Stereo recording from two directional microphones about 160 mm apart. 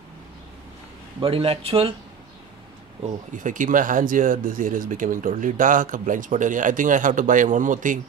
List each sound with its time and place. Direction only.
1.2 s speech: 35° right (ahead or behind)
3.0 s speech: 55° right (ahead or behind)